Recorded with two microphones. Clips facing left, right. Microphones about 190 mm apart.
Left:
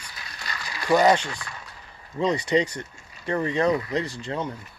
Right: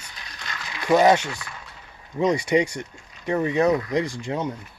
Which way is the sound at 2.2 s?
10° right (ahead or behind).